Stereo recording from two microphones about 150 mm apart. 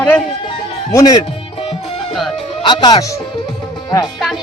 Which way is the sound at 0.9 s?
25° left (ahead or behind).